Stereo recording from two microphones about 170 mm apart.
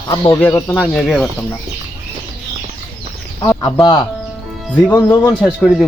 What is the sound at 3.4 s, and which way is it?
Speech, 25° left (ahead or behind).